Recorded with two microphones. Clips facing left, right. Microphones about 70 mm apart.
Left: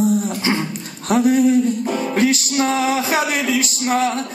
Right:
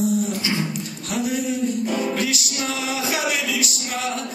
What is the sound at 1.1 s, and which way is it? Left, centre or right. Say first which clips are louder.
Music: left 10 dB; left.